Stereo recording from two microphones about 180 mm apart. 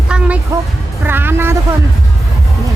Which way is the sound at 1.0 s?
10° right (ahead or behind).